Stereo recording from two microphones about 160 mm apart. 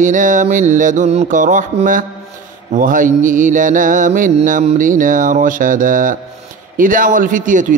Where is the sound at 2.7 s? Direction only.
55° right (ahead or behind).